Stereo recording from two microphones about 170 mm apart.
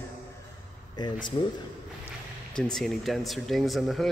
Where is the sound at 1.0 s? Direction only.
25° left (ahead or behind).